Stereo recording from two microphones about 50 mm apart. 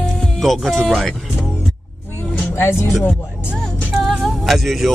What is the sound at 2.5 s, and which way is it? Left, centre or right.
Speech, left.